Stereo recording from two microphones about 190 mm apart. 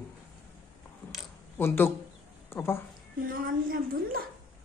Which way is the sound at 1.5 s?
10° left (ahead or behind).